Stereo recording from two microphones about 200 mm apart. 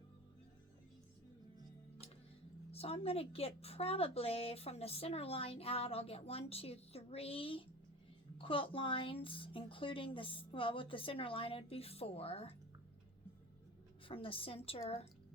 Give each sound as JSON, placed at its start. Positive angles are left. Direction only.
{"t": 2.7, "sound": "a woman's voice", "side_deg": 30}
{"t": 14.1, "sound": "a woman's voice", "side_deg": 25}